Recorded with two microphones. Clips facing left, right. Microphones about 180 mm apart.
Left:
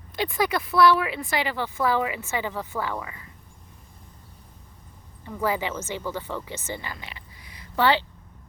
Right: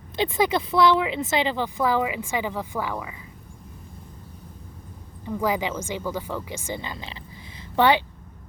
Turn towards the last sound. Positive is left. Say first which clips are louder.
# right 3 dB
turn(degrees=-20)  # may be behind; listen again after turning